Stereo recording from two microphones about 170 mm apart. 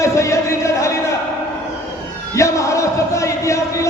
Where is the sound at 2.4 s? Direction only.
20° left (ahead or behind).